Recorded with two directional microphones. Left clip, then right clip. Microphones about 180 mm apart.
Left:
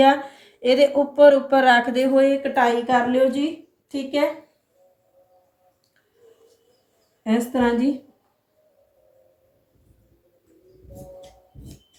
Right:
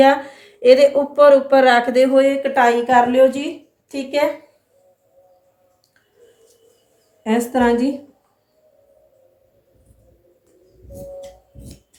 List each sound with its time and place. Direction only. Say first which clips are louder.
0.0 s a woman's voice: right 3 dB; 35° right (ahead or behind)
7.3 s a woman's voice: right 5 dB; 45° right (ahead or behind)